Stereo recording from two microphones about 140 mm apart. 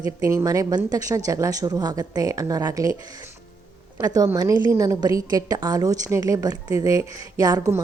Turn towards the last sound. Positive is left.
turn(degrees=-25)  # may be behind; listen again after turning